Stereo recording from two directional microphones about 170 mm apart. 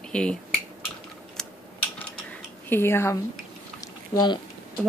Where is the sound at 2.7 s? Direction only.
15° left (ahead or behind).